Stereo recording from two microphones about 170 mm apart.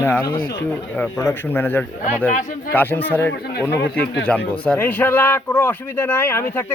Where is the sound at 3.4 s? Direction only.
70° left (ahead or behind).